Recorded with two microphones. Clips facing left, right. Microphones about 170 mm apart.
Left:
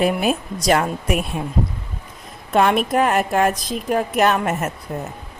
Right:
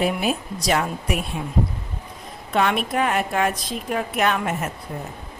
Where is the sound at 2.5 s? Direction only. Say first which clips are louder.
Left 5 dB; 45° left (ahead or behind).